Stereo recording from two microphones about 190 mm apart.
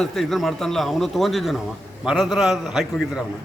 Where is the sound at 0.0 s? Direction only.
Centre (ahead or behind).